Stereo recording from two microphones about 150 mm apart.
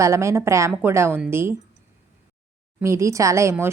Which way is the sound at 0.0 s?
20° right (ahead or behind).